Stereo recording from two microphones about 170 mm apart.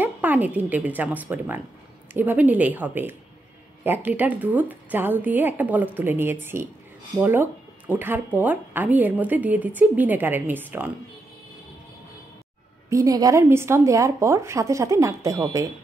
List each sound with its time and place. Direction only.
0.0 s speech: 10° right (ahead or behind)
12.9 s speech: 20° right (ahead or behind)